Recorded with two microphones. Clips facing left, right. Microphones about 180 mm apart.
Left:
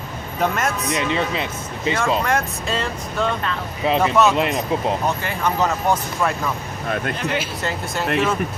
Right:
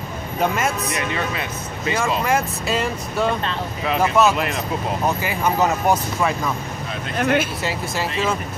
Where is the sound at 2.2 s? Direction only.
5° right (ahead or behind).